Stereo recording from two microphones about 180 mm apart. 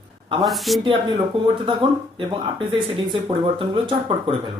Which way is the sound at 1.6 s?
30° right (ahead or behind).